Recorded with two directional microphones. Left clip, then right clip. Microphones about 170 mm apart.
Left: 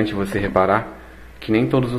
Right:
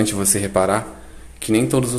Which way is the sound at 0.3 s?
20° right (ahead or behind).